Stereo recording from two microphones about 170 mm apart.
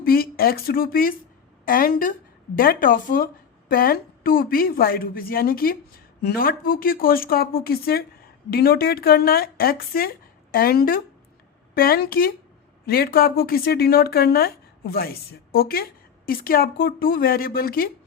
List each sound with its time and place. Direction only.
0.0 s speech: 60° left (ahead or behind)